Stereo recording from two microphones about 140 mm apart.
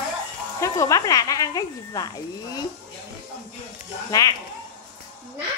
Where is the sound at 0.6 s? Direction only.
20° left (ahead or behind).